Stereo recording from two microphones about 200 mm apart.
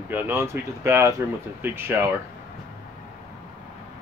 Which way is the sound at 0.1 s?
10° right (ahead or behind).